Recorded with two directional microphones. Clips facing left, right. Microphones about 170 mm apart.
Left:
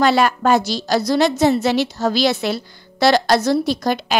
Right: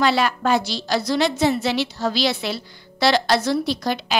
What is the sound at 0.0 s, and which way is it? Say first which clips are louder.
A woman's voice: left 4 dB; 45° left (ahead or behind).